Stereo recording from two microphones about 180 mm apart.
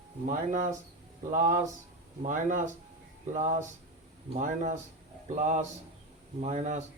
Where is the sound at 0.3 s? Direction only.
45° right (ahead or behind).